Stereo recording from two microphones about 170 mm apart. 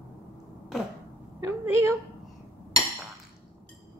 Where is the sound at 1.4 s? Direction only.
15° right (ahead or behind).